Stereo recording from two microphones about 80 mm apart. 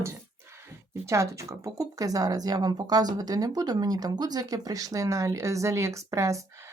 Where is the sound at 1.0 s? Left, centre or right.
Right.